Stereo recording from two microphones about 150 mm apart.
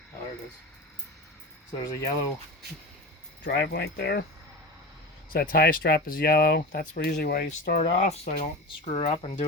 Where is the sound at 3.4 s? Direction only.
90° left.